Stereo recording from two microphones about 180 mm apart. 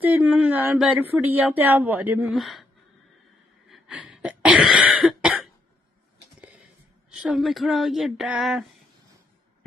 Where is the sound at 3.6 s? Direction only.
5° right (ahead or behind).